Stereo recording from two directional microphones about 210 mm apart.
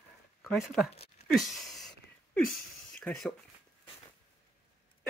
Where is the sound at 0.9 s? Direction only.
30° left (ahead or behind).